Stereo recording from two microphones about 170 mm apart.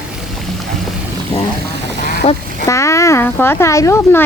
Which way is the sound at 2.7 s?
15° left (ahead or behind).